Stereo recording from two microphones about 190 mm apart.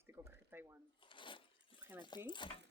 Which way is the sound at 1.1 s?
25° left (ahead or behind).